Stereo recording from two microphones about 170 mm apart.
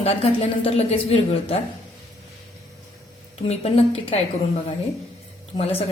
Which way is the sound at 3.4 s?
35° left (ahead or behind).